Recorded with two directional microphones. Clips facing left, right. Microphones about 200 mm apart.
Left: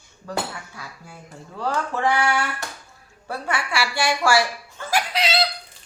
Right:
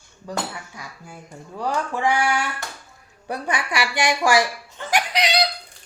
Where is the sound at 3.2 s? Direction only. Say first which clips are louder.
Right 1 dB; 15° right (ahead or behind).